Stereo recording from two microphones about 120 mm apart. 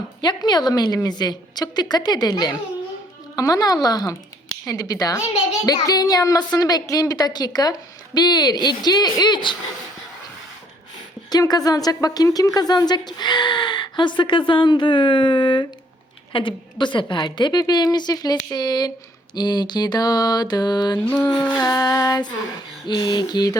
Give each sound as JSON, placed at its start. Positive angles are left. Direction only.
{"t": 0.2, "sound": "speech", "side_deg": 35}
{"t": 11.3, "sound": "speech", "side_deg": 30}
{"t": 21.0, "sound": "mantra", "side_deg": 15}
{"t": 21.6, "sound": "speech", "side_deg": 30}